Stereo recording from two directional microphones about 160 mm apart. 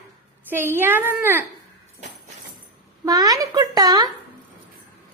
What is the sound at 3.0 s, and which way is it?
Speech, 20° right (ahead or behind).